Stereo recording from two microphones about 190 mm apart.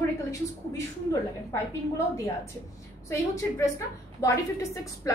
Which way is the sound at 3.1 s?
15° left (ahead or behind).